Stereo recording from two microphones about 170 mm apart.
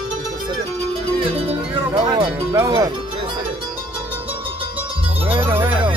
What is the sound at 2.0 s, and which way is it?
Music, 20° right (ahead or behind).